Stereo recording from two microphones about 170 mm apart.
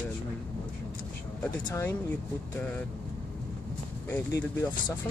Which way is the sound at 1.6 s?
20° left (ahead or behind).